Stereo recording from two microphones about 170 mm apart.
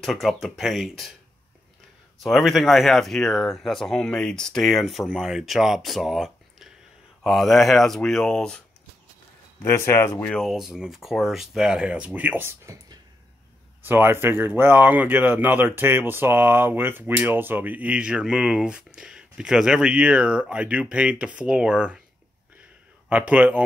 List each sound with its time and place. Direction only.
0.0 s speech: centre (ahead or behind)
2.2 s speech: centre (ahead or behind)
9.6 s speech: 15° left (ahead or behind); by 22.0 s 5° right (ahead or behind)
23.0 s speech: 10° right (ahead or behind)